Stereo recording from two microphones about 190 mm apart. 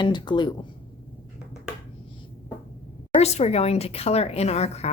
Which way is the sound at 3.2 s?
35° left (ahead or behind).